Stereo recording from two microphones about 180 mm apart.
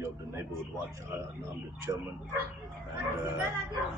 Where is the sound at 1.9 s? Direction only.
15° right (ahead or behind).